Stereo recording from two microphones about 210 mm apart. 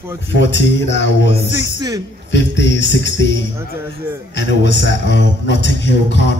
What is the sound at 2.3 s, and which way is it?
A man's voice, 55° left (ahead or behind).